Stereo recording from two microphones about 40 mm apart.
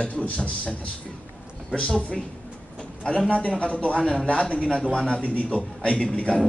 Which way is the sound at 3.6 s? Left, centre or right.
Left.